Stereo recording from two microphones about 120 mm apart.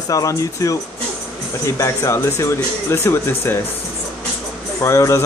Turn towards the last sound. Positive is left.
turn(degrees=25)  # may be behind; listen again after turning